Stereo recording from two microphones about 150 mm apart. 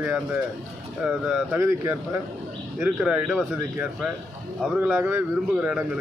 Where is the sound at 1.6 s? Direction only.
15° right (ahead or behind).